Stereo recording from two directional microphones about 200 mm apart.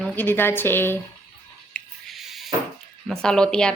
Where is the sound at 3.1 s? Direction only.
5° left (ahead or behind).